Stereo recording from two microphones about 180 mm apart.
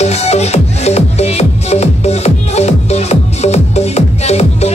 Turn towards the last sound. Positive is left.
turn(degrees=35)  # may be behind; listen again after turning